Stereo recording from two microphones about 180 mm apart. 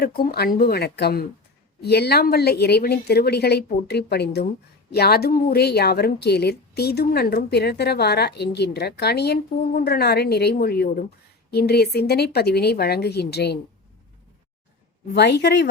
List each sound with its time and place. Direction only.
0.0 s a woman's voice: 60° left (ahead or behind)
15.1 s speech: 70° left (ahead or behind)